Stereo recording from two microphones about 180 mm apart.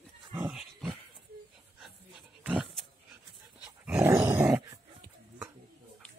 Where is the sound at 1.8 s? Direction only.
5° right (ahead or behind).